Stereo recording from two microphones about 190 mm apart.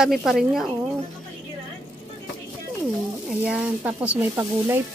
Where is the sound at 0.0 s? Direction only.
Centre (ahead or behind).